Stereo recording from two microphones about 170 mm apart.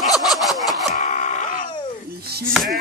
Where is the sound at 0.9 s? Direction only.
45° left (ahead or behind).